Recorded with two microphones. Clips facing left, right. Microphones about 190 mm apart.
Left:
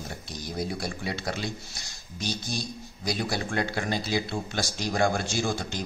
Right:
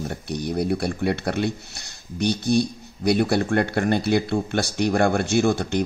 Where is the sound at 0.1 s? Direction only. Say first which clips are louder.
Right 10 dB; 65° right (ahead or behind).